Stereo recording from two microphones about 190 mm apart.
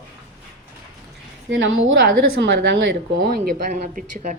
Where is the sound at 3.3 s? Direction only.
50° right (ahead or behind).